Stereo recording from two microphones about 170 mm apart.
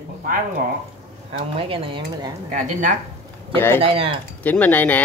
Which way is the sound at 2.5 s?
45° right (ahead or behind).